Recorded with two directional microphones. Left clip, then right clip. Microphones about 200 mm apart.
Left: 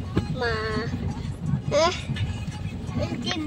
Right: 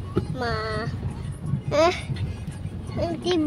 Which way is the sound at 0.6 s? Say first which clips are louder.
Even; 30° right (ahead or behind).